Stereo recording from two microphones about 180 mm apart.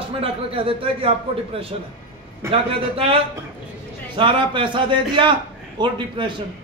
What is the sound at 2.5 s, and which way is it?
A man's voice, 30° right (ahead or behind).